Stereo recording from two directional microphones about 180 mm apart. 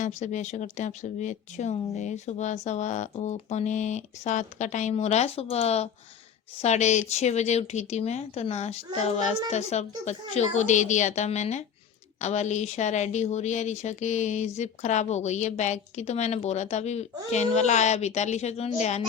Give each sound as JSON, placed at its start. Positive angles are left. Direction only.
{"t": 0.0, "sound": "speech", "side_deg": 40}